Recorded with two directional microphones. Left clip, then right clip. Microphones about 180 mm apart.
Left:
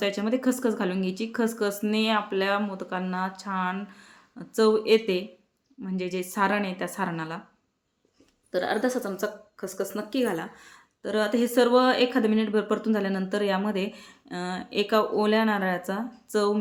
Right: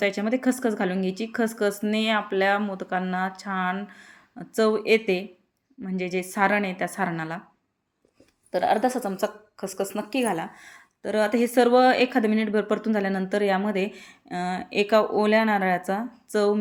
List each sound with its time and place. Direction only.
0.0 s a woman's voice: 20° right (ahead or behind)
8.4 s a woman's voice: 20° right (ahead or behind)